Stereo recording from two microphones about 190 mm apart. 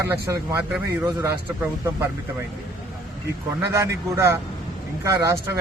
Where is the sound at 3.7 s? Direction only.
15° right (ahead or behind).